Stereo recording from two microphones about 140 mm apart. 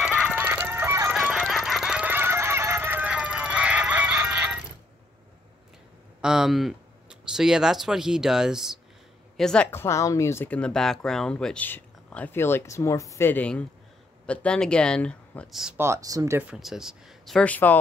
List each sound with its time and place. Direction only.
0.0 s chicken: 5° right (ahead or behind)
0.4 s fowl: 15° right (ahead or behind)
1.1 s goose: 5° right (ahead or behind)
6.2 s speech: 5° right (ahead or behind)
9.7 s speech: 20° left (ahead or behind)
15.8 s speech: 20° right (ahead or behind)
16.4 s speech: 5° right (ahead or behind)
17.4 s speech: 10° left (ahead or behind)